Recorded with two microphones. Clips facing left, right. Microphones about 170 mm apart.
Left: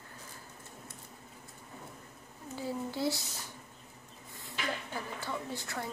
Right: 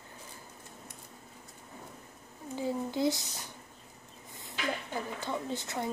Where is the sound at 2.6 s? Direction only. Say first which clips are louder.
Right 4 dB; 20° right (ahead or behind).